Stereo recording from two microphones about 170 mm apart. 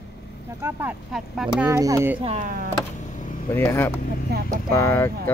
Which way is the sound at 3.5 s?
15° left (ahead or behind).